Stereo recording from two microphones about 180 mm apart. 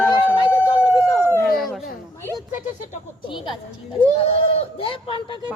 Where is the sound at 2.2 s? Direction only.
15° left (ahead or behind).